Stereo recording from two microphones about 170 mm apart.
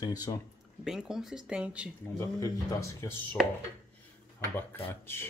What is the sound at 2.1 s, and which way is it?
Speech, 15° left (ahead or behind).